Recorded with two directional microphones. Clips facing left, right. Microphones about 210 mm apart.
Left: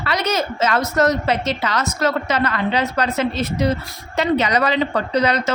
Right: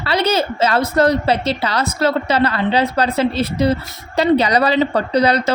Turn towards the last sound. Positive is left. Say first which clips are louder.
# right 3 dB
turn(degrees=-35)  # may be behind; listen again after turning